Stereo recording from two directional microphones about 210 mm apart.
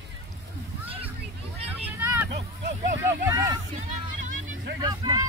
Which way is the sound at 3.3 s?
15° right (ahead or behind).